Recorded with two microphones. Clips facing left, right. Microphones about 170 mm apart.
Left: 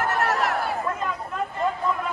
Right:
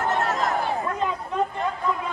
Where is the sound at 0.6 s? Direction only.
5° left (ahead or behind).